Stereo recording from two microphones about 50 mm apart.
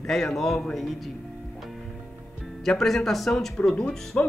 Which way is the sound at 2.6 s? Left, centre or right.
Centre.